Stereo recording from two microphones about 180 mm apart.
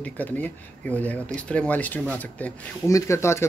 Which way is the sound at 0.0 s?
10° left (ahead or behind).